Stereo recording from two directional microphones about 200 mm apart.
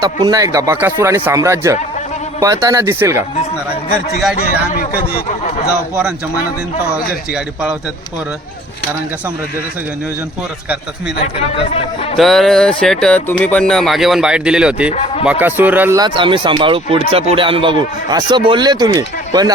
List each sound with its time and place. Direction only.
0.0 s speech: 20° right (ahead or behind)
4.7 s speech: 45° left (ahead or behind)
6.0 s speech: 5° right (ahead or behind)
12.1 s speech: centre (ahead or behind)
14.8 s speech: 30° left (ahead or behind)
15.2 s speech: 5° right (ahead or behind)